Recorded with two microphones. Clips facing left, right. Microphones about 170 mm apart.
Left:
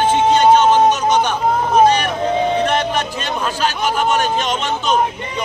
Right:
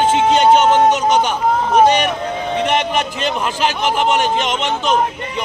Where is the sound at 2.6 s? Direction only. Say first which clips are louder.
Right 1 dB; 20° right (ahead or behind).